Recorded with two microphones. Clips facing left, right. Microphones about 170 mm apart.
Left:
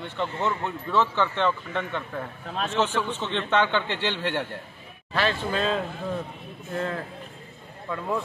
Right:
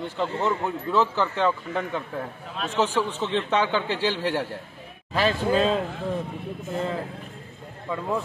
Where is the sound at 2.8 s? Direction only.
35° right (ahead or behind).